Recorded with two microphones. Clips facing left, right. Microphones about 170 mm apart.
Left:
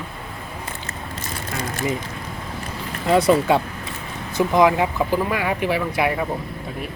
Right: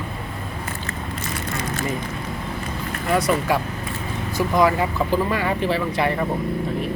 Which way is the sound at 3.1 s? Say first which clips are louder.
Left 4 dB; 25° left (ahead or behind).